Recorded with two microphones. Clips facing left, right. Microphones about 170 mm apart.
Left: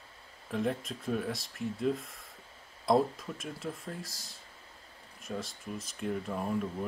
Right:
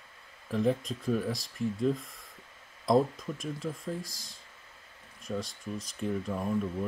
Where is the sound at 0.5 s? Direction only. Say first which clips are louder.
Right 4 dB; centre (ahead or behind).